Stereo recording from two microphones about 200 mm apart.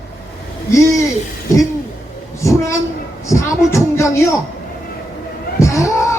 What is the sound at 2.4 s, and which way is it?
A man's voice, 15° left (ahead or behind).